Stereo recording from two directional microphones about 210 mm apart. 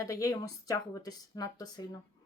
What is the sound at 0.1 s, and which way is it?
Speech, 15° left (ahead or behind).